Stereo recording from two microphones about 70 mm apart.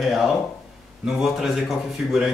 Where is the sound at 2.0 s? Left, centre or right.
Centre.